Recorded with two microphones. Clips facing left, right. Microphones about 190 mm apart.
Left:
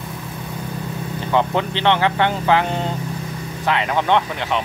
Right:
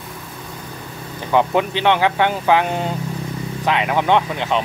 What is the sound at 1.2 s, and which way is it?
Speech, 15° right (ahead or behind).